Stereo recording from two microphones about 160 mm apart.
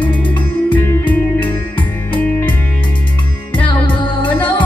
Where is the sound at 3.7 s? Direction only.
30° left (ahead or behind).